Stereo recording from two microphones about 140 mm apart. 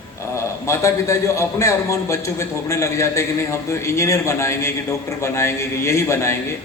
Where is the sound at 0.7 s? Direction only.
20° left (ahead or behind).